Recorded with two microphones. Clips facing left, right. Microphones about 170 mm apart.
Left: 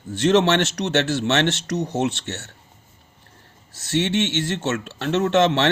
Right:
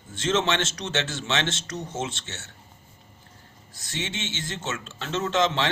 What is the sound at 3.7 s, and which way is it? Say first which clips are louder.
Speech: left 12 dB; 70° left (ahead or behind).